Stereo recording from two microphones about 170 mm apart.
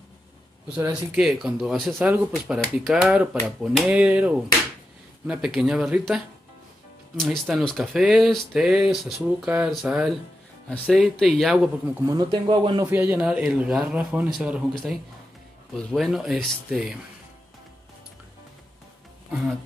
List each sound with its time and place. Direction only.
0.7 s speech: 10° right (ahead or behind)
1.2 s speech: centre (ahead or behind)
12.0 s speech: 20° right (ahead or behind)
12.9 s speech: 10° right (ahead or behind)
15.7 s speech: centre (ahead or behind)